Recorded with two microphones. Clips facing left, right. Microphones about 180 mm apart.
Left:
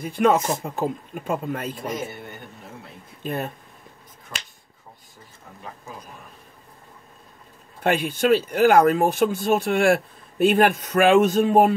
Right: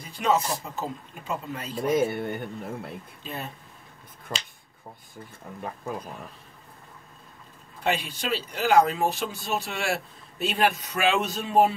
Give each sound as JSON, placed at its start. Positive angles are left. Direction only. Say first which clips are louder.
{"t": 0.0, "sound": "speech", "louder": "left 6 dB", "side_deg": 55}
{"t": 2.0, "sound": "speech", "louder": "right 8 dB", "side_deg": -55}
{"t": 3.3, "sound": "speech", "louder": "left 8 dB", "side_deg": 55}
{"t": 4.3, "sound": "speech", "louder": "right 5 dB", "side_deg": -65}
{"t": 7.8, "sound": "speech", "louder": "left 7 dB", "side_deg": 55}